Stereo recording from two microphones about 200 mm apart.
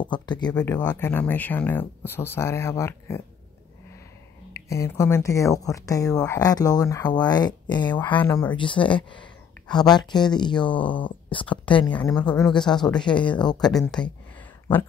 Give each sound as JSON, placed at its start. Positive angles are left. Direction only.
{"t": 0.0, "sound": "speech", "side_deg": 20}
{"t": 0.8, "sound": "speech", "side_deg": 10}
{"t": 4.6, "sound": "speech", "side_deg": 15}
{"t": 12.4, "sound": "speech", "side_deg": 5}
{"t": 13.0, "sound": "speech", "side_deg": 25}
{"t": 13.7, "sound": "speech", "side_deg": 5}